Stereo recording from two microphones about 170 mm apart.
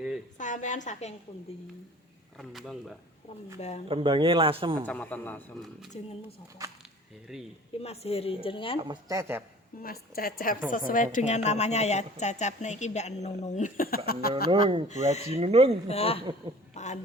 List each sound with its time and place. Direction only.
0.3 s a woman's voice: 45° left (ahead or behind)
2.4 s speech: centre (ahead or behind)
3.8 s speech: 30° right (ahead or behind)
4.9 s a man's voice: 10° left (ahead or behind)
5.9 s speech: 40° left (ahead or behind)
6.6 s speech: 20° right (ahead or behind)
7.8 s speech: 35° left (ahead or behind)
8.8 s speech: 25° right (ahead or behind)
9.8 s a woman's voice: 60° left (ahead or behind)
14.5 s speech: 30° right (ahead or behind)
14.8 s speech: 40° left (ahead or behind)
15.4 s speech: 35° right (ahead or behind)
15.9 s speech: 35° left (ahead or behind)
16.7 s a sound: 45° left (ahead or behind)